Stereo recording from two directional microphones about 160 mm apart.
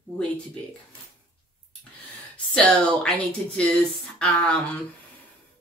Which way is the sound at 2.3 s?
5° left (ahead or behind).